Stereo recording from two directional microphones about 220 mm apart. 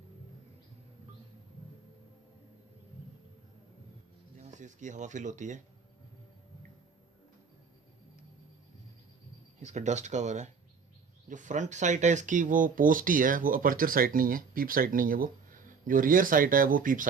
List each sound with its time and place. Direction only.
4.4 s speech: 35° right (ahead or behind)
9.6 s speech: 30° right (ahead or behind)